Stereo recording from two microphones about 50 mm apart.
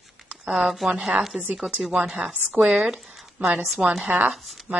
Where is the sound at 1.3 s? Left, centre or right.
Right.